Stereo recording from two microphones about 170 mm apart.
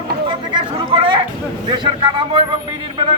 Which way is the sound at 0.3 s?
30° right (ahead or behind).